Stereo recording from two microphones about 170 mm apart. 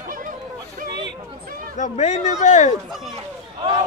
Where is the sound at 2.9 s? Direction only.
Centre (ahead or behind).